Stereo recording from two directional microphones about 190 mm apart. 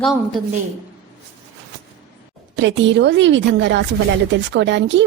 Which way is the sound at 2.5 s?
70° right (ahead or behind).